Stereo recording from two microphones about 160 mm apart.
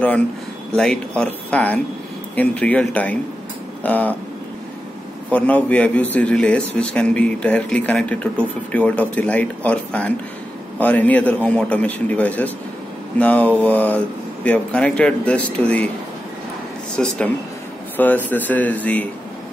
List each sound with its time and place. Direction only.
0.7 s a man's voice: 5° left (ahead or behind)
5.3 s a man's voice: 10° left (ahead or behind)
16.9 s a man's voice: 5° left (ahead or behind)